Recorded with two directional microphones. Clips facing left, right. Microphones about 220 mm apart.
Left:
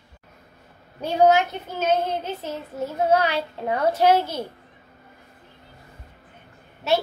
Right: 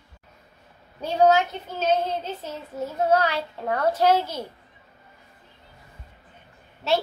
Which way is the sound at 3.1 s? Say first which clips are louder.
Left 1 dB; 15° left (ahead or behind).